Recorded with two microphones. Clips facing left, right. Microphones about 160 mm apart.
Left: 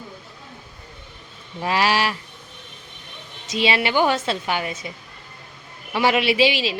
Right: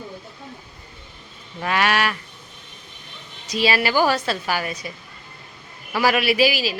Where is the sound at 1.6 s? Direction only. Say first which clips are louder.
Even; 30° left (ahead or behind).